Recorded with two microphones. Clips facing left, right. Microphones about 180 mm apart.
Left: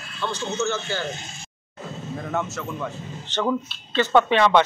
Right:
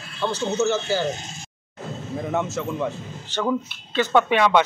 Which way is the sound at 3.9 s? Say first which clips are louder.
Left 1 dB; 10° right (ahead or behind).